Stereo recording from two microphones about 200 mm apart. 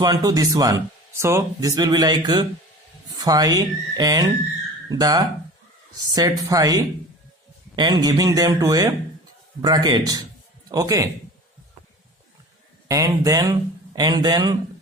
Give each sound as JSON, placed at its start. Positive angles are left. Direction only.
{"t": 0.0, "sound": "speech", "side_deg": -20}
{"t": 12.9, "sound": "speech", "side_deg": -15}